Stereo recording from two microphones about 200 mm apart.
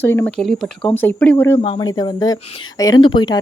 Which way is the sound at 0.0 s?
10° left (ahead or behind).